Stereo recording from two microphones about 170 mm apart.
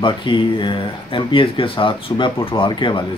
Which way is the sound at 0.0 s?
30° left (ahead or behind).